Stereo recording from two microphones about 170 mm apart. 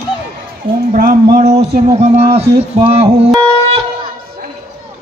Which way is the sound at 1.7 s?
40° right (ahead or behind).